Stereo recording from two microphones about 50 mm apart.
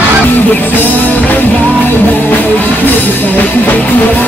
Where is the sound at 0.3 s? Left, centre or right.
Left.